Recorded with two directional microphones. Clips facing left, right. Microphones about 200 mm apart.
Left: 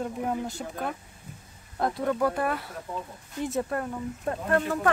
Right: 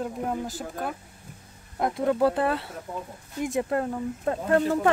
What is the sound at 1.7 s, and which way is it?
Speech, 20° right (ahead or behind).